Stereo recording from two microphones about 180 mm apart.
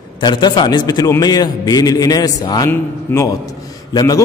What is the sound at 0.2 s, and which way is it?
A man's voice, 25° left (ahead or behind).